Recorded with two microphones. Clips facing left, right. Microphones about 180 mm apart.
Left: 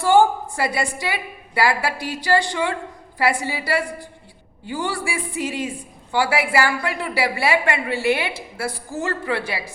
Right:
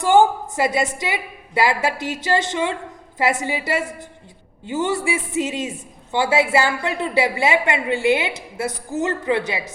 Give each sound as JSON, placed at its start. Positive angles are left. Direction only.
{"t": 0.0, "sound": "a woman's voice", "side_deg": -20}